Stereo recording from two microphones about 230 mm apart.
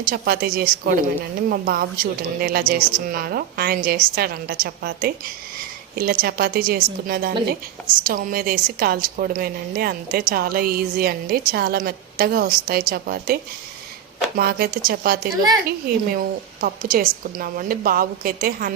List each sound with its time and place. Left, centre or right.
0.0 s a woman's voice: right